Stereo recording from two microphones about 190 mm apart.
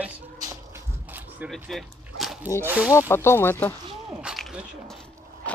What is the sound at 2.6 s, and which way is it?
Speech, 5° right (ahead or behind).